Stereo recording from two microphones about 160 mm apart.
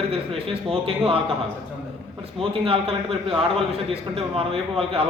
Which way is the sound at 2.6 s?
35° right (ahead or behind).